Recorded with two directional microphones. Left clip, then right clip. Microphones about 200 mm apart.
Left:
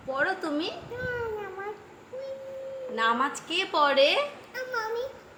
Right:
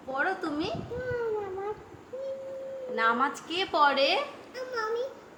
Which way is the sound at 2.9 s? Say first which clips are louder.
Even; 15° left (ahead or behind).